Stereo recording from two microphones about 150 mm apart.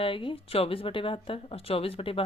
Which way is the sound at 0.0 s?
35° left (ahead or behind).